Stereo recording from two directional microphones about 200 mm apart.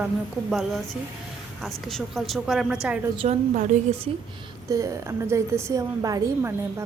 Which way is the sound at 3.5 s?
40° right (ahead or behind).